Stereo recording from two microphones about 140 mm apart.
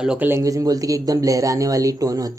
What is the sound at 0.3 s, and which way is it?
Speech, 25° right (ahead or behind).